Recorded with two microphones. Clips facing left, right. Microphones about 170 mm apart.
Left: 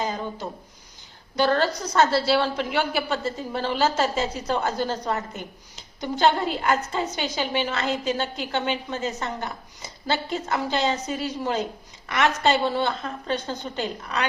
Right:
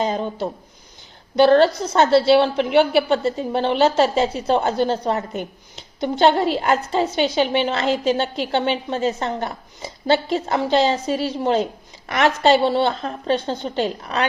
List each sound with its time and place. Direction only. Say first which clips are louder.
0.0 s a woman's voice: right 6 dB; 30° right (ahead or behind)
6.1 s a woman's voice: right 5 dB; 30° right (ahead or behind)